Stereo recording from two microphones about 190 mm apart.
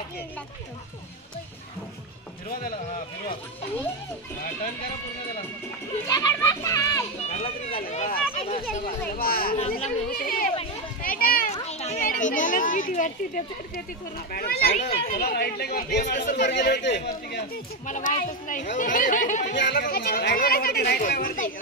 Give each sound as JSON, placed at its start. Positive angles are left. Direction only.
{"t": 6.0, "sound": "a child's voice", "side_deg": 20}
{"t": 7.2, "sound": "speech", "side_deg": 35}
{"t": 9.1, "sound": "speech", "side_deg": 50}
{"t": 11.0, "sound": "a sound", "side_deg": 50}
{"t": 11.6, "sound": "speech", "side_deg": 35}
{"t": 14.1, "sound": "speech", "side_deg": 55}
{"t": 16.1, "sound": "speech", "side_deg": 45}
{"t": 16.4, "sound": "speech", "side_deg": 65}
{"t": 17.8, "sound": "speech", "side_deg": 45}
{"t": 19.5, "sound": "speech", "side_deg": 65}